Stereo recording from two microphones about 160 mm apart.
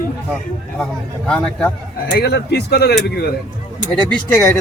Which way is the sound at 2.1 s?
90° left.